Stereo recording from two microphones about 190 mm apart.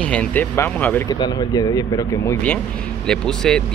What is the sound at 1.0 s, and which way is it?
Speech, 20° left (ahead or behind).